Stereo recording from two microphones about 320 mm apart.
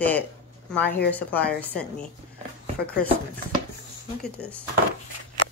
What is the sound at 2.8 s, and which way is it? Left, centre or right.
Speech, left.